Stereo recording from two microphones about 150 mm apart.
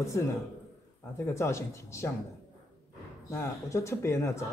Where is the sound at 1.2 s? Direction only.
20° left (ahead or behind).